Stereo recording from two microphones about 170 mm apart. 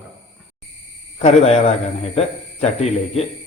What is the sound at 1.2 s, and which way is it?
A man's voice, 35° left (ahead or behind).